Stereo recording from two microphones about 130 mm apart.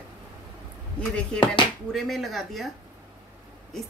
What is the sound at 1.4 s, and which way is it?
Speech, 40° left (ahead or behind).